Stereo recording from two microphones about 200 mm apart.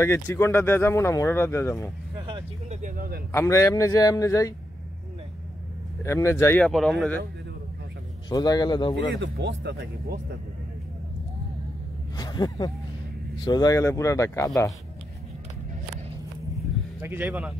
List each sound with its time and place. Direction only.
0.0 s speech: 15° left (ahead or behind)
2.1 s speech: 25° right (ahead or behind)
2.8 s speech: 45° right (ahead or behind)
3.3 s speech: 15° left (ahead or behind)
6.0 s speech: 15° left (ahead or behind)
8.3 s a man's voice: 20° left (ahead or behind)
9.2 s speech: 60° right (ahead or behind)
12.2 s speech: 20° left (ahead or behind)
17.0 s speech: 10° right (ahead or behind)